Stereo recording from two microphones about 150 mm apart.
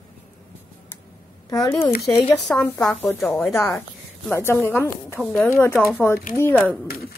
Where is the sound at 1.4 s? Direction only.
20° left (ahead or behind).